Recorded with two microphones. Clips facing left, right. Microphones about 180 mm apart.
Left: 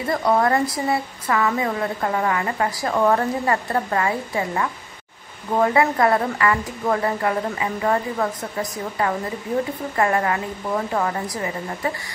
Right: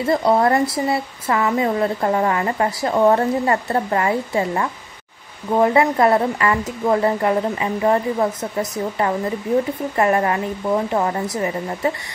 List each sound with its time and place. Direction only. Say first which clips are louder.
0.0 s speech: right 3 dB; 25° right (ahead or behind)